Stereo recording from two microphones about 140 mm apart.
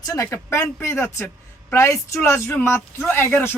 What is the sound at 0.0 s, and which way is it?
A man's voice, 25° left (ahead or behind).